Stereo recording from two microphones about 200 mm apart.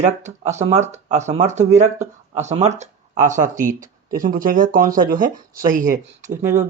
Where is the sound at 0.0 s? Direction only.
35° right (ahead or behind).